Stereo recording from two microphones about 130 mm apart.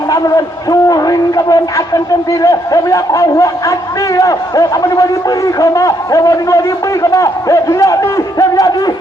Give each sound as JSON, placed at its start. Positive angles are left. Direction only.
{"t": 0.1, "sound": "a man's voice", "side_deg": 30}